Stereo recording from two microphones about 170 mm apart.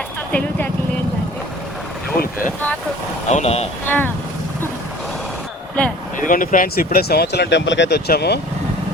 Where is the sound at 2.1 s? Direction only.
60° left (ahead or behind).